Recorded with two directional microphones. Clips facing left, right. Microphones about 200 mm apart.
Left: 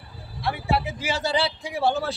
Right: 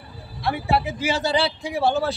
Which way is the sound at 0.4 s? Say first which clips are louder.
Right 3 dB; 55° right (ahead or behind).